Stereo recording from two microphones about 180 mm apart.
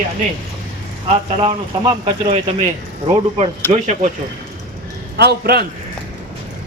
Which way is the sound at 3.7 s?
40° right (ahead or behind).